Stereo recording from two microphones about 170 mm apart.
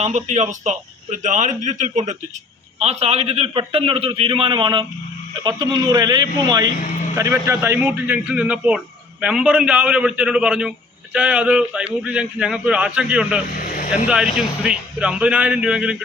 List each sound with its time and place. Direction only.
0.0 s a man's voice: 45° right (ahead or behind); by 16.0 s 5° right (ahead or behind)